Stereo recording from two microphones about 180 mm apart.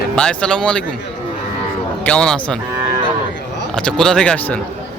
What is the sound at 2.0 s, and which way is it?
Speech, 5° left (ahead or behind).